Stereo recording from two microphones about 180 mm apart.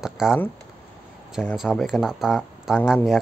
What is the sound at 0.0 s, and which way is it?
Speech, 5° right (ahead or behind).